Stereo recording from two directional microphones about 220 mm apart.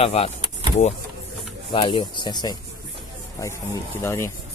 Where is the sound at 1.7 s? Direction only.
20° left (ahead or behind).